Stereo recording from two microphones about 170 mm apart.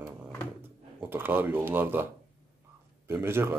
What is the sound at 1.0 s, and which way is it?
Speech, 10° right (ahead or behind).